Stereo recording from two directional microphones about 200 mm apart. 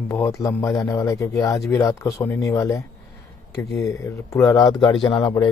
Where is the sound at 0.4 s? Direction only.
15° left (ahead or behind).